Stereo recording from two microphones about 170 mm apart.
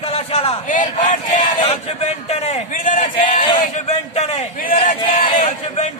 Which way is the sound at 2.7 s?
50° left (ahead or behind).